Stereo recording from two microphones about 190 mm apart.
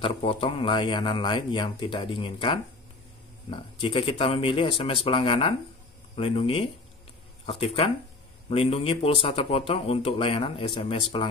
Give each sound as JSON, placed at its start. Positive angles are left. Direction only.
{"t": 0.0, "sound": "a man's voice", "side_deg": 30}